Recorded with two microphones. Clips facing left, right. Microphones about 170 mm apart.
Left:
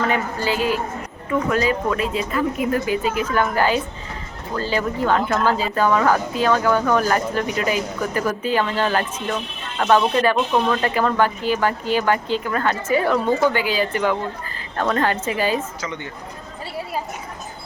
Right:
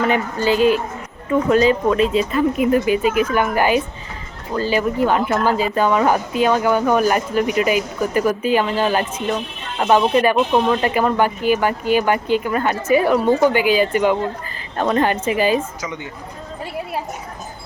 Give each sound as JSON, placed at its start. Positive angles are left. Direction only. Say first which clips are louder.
{"t": 0.1, "sound": "speech", "louder": "right 4 dB", "side_deg": -20}